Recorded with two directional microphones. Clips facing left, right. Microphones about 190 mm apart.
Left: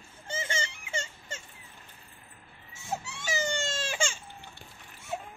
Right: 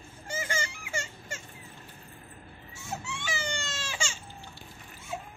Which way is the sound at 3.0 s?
40° left (ahead or behind).